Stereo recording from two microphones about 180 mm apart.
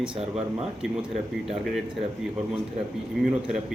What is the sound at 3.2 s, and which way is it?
Speech, centre (ahead or behind).